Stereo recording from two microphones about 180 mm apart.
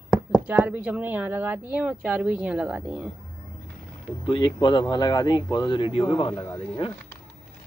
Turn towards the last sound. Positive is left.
turn(degrees=30)  # may be behind; listen again after turning